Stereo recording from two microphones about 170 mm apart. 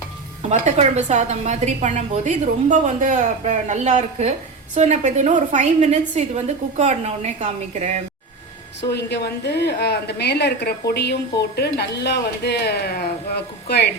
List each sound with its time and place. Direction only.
0.4 s a woman's voice: 40° right (ahead or behind)
8.9 s a woman's voice: 80° left